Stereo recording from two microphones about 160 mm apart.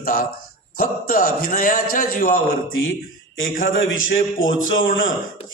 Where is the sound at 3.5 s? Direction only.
60° left (ahead or behind).